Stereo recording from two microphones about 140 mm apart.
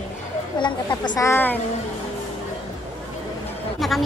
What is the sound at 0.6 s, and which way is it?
Speech, 30° left (ahead or behind).